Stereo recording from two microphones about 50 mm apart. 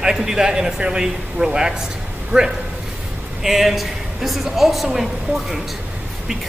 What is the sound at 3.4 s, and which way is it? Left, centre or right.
A woman's voice, centre.